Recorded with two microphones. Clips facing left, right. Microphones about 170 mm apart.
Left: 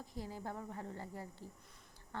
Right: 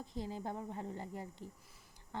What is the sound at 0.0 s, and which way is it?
A woman's voice, 25° right (ahead or behind).